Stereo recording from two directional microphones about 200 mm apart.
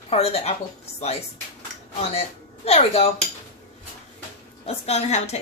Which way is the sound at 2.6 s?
30° left (ahead or behind).